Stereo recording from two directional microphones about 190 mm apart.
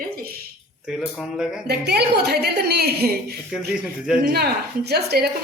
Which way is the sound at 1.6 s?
60° right (ahead or behind).